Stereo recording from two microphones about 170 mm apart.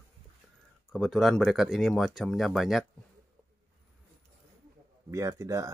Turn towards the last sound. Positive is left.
turn(degrees=-20)  # may be behind; listen again after turning